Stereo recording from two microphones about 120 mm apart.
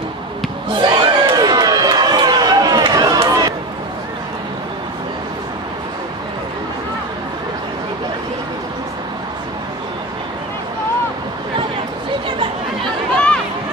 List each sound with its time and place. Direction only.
0.7 s crowd: 40° right (ahead or behind)